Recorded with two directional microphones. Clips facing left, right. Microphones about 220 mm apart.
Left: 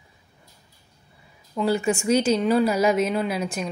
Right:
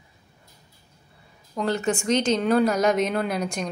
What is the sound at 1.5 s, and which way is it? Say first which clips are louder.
Speech: left 2 dB; 10° left (ahead or behind).